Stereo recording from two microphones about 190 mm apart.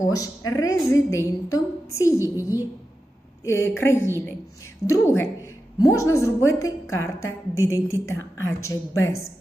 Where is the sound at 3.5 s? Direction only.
15° left (ahead or behind).